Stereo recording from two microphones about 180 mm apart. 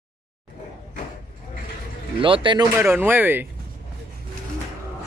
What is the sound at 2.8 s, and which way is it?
Speech, 10° right (ahead or behind).